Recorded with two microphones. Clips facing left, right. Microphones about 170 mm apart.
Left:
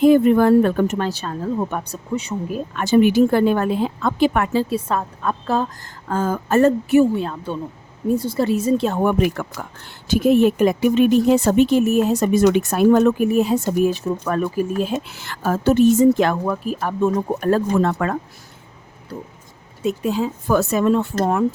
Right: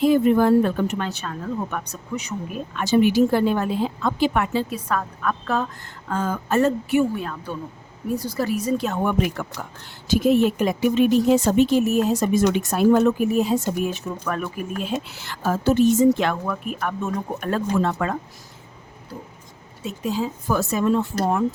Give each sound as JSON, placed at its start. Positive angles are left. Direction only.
{"t": 0.0, "sound": "speech", "side_deg": 55}
{"t": 2.7, "sound": "a woman's voice", "side_deg": 50}
{"t": 4.7, "sound": "speech", "side_deg": 25}
{"t": 7.0, "sound": "speech", "side_deg": 30}
{"t": 9.4, "sound": "a woman's voice", "side_deg": 55}
{"t": 13.8, "sound": "speech", "side_deg": 35}
{"t": 16.1, "sound": "speech", "side_deg": 40}
{"t": 20.1, "sound": "a woman's voice", "side_deg": 60}